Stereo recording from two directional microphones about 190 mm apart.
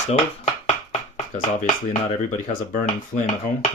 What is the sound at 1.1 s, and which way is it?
Speech, 35° left (ahead or behind).